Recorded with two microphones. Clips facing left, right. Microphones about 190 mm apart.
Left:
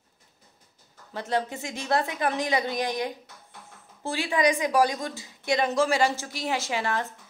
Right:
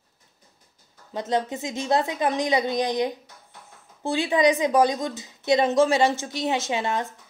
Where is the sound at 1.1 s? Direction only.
20° right (ahead or behind).